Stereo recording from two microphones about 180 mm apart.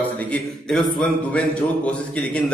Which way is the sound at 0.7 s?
5° left (ahead or behind).